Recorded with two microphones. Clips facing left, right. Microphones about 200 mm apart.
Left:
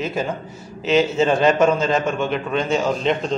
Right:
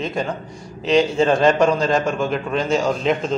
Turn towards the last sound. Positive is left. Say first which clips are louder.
# right 1 dB
turn(degrees=0)  # may be behind; listen again after turning